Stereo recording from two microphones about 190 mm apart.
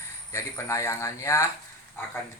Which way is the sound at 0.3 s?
15° left (ahead or behind).